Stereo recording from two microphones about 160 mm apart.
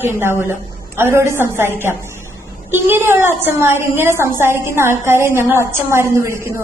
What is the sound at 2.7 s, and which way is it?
A woman's voice, 15° right (ahead or behind).